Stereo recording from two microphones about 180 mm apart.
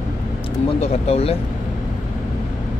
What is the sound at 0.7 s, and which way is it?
Speech, 35° left (ahead or behind).